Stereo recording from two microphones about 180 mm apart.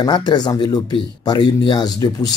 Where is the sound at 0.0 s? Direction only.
25° left (ahead or behind).